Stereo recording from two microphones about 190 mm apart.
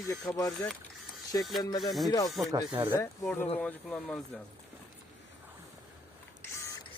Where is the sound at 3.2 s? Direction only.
10° left (ahead or behind).